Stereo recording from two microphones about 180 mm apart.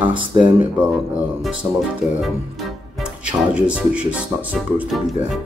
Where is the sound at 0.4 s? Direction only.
5° right (ahead or behind).